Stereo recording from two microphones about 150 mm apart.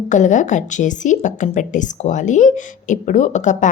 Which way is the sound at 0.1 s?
55° left (ahead or behind).